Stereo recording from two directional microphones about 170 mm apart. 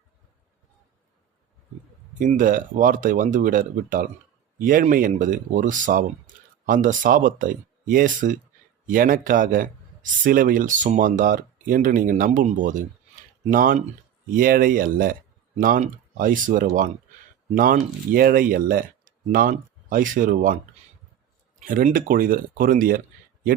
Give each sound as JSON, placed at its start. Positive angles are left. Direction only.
{"t": 2.1, "sound": "a man's voice", "side_deg": -50}
{"t": 21.6, "sound": "a man's voice", "side_deg": -50}